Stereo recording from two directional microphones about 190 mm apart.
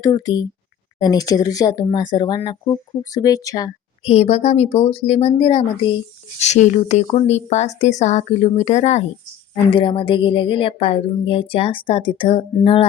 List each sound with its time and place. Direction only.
0.0 s a woman's voice: 20° left (ahead or behind)
4.0 s a woman's voice: 35° left (ahead or behind)